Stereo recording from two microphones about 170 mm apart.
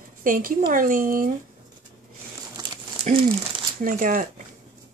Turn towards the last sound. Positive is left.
turn(degrees=-50)  # may be behind; listen again after turning